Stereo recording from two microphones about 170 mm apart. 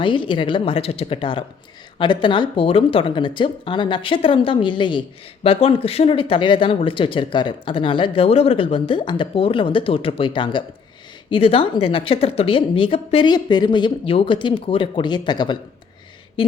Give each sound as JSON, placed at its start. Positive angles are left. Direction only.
{"t": 0.0, "sound": "a woman's voice", "side_deg": 30}